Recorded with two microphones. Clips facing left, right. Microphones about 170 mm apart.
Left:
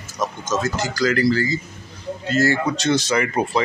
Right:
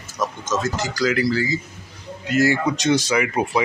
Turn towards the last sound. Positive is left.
turn(degrees=-10)  # may be behind; listen again after turning